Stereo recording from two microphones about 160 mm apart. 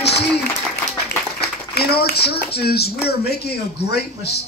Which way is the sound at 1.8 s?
80° left.